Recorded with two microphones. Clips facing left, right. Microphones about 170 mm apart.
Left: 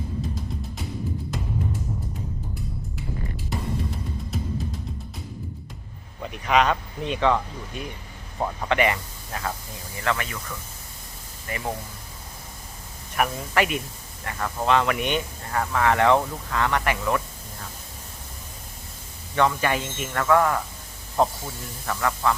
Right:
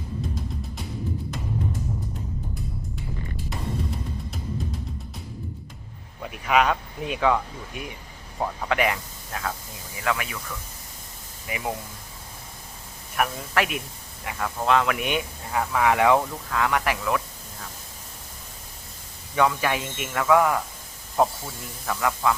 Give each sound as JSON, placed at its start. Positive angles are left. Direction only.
{"t": 6.2, "sound": "speech", "side_deg": -5}
{"t": 11.4, "sound": "speech", "side_deg": -10}
{"t": 13.1, "sound": "speech", "side_deg": 0}
{"t": 19.4, "sound": "speech", "side_deg": 0}